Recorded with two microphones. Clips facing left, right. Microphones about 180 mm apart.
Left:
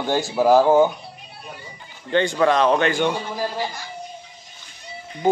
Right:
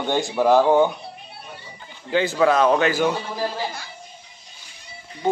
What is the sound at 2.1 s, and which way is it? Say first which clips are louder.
Speech: even; 5° right (ahead or behind).